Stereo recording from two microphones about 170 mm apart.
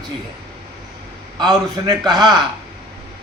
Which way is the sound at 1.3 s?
25° right (ahead or behind).